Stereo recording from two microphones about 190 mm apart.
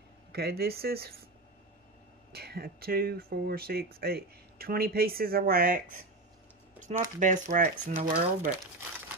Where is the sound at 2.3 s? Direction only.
55° right (ahead or behind).